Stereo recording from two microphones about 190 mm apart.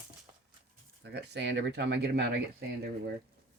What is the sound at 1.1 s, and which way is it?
Speech, 65° right (ahead or behind).